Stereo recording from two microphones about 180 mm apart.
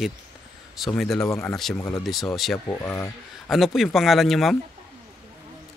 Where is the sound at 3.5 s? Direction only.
Centre (ahead or behind).